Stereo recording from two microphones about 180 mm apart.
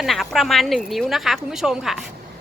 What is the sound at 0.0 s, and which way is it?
Speech, centre (ahead or behind).